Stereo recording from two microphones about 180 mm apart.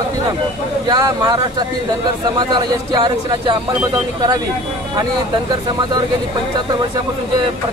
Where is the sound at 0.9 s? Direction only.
20° right (ahead or behind).